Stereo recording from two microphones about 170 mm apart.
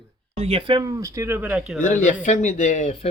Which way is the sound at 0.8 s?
20° right (ahead or behind).